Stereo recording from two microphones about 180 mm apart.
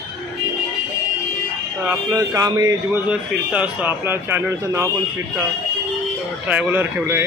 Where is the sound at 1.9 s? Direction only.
20° right (ahead or behind).